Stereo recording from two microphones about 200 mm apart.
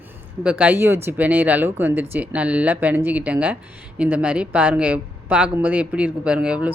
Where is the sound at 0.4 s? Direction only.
10° right (ahead or behind).